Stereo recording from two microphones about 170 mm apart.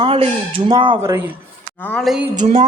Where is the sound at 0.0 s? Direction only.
30° right (ahead or behind).